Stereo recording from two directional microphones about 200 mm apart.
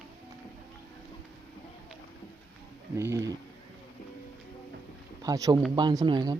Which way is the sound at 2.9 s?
15° right (ahead or behind).